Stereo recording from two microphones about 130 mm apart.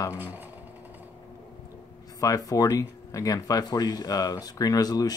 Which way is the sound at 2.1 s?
25° left (ahead or behind).